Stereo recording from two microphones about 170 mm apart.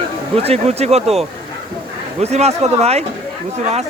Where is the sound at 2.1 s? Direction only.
40° right (ahead or behind).